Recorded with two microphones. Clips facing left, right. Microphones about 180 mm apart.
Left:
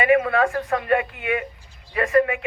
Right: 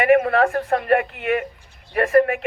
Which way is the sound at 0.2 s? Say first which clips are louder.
Right 2 dB; 50° right (ahead or behind).